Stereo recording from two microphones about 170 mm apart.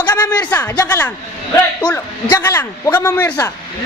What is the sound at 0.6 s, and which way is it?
Speech, 20° left (ahead or behind).